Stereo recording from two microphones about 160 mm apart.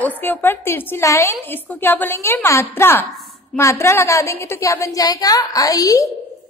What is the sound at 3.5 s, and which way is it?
A woman's voice, 15° left (ahead or behind).